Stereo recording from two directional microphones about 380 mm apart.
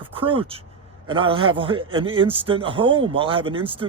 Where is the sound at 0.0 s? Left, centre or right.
Centre.